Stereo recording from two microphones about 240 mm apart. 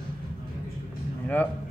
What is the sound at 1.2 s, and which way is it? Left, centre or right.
Speech, centre.